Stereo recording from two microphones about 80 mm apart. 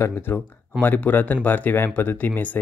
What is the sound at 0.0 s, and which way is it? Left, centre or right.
Speech, left.